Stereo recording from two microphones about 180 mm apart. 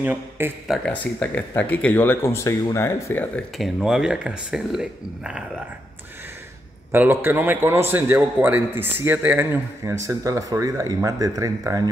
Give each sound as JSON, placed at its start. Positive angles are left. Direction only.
{"t": 0.0, "sound": "a man's voice", "side_deg": -10}
{"t": 0.8, "sound": "speech", "side_deg": 10}
{"t": 3.5, "sound": "speech", "side_deg": 0}
{"t": 6.9, "sound": "a man's voice", "side_deg": -10}